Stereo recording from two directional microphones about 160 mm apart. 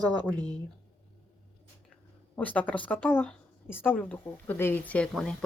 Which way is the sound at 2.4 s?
10° left (ahead or behind).